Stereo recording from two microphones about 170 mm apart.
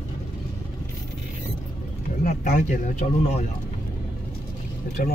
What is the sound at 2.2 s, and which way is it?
Speech, 50° left (ahead or behind).